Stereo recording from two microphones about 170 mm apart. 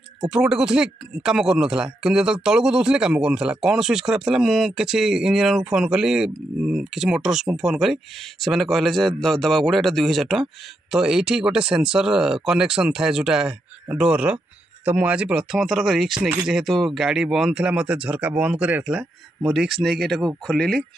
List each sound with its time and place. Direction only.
0.3 s speech: 5° right (ahead or behind)